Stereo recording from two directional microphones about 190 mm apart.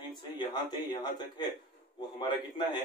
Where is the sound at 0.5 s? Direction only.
25° left (ahead or behind).